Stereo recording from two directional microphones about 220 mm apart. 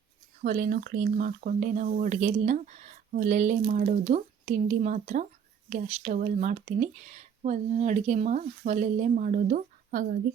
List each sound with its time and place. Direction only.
0.4 s speech: 40° right (ahead or behind)